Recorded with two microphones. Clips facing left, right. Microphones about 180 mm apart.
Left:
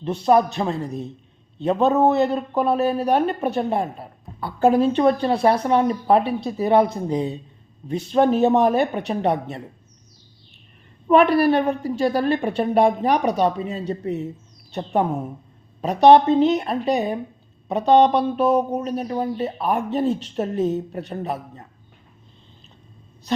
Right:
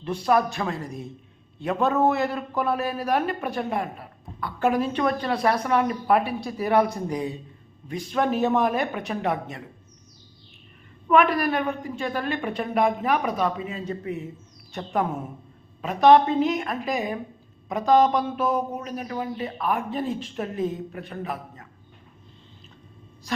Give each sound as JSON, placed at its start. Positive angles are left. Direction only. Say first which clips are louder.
{"t": 0.0, "sound": "a man's voice", "louder": "left 5 dB", "side_deg": 25}
{"t": 11.1, "sound": "a woman's voice", "louder": "left 5 dB", "side_deg": 30}